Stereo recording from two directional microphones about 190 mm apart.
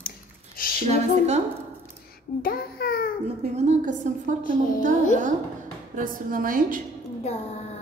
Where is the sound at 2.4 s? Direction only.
50° left (ahead or behind).